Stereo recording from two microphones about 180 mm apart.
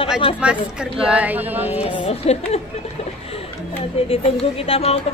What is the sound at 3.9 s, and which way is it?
A woman's voice, 30° left (ahead or behind).